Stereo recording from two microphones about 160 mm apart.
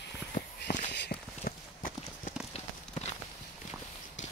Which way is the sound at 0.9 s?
80° left.